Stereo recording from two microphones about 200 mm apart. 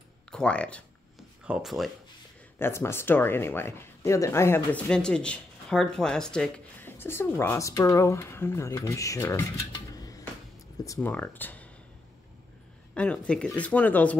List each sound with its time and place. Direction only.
0.3 s speech: 5° left (ahead or behind)
2.6 s speech: 10° left (ahead or behind)
9.9 s a sound: 20° left (ahead or behind)
10.9 s speech: 10° left (ahead or behind)
12.9 s speech: 5° left (ahead or behind)